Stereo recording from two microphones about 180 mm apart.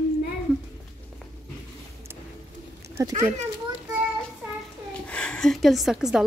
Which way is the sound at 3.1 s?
40° right (ahead or behind).